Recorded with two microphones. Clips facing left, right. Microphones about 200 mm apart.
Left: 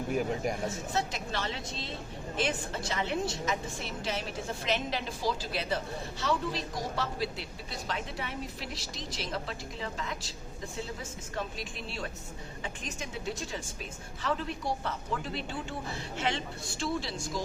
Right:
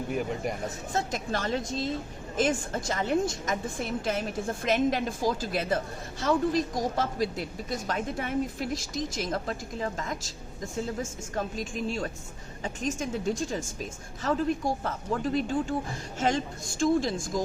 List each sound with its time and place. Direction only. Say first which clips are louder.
0.1 s speech: left 1 dB; centre (ahead or behind)
0.9 s a woman's voice: right 6 dB; 45° right (ahead or behind)